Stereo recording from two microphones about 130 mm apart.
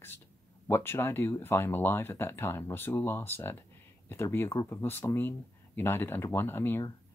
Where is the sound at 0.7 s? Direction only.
15° left (ahead or behind).